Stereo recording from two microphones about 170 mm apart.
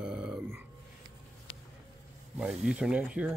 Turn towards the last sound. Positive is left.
turn(degrees=-5)  # may be behind; listen again after turning